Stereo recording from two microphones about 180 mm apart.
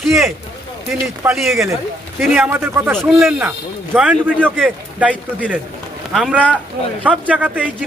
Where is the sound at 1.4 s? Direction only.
Centre (ahead or behind).